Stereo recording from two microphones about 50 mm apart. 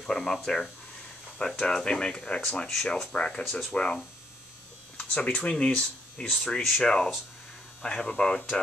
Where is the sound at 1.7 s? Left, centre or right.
Centre.